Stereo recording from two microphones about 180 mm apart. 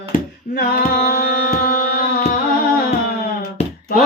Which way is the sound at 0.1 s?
55° left (ahead or behind).